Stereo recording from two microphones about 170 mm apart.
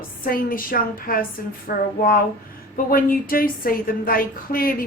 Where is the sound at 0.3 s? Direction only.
55° left (ahead or behind).